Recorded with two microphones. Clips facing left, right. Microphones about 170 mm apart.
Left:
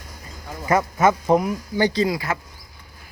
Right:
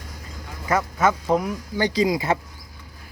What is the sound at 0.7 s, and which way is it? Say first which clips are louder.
Speech: left 3 dB; 10° left (ahead or behind).